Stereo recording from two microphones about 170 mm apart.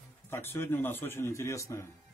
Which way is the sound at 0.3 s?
15° left (ahead or behind).